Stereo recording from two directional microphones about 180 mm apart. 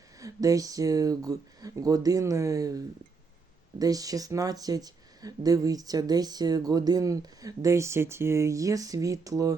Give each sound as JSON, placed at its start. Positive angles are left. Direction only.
{"t": 0.2, "sound": "speech", "side_deg": -20}